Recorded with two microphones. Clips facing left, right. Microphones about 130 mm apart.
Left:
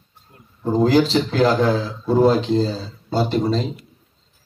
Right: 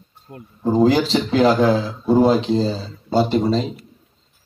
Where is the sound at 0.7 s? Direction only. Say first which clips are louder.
Even; centre (ahead or behind).